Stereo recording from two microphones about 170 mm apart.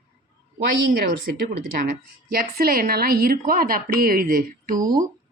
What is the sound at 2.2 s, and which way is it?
A woman's voice, 60° right (ahead or behind).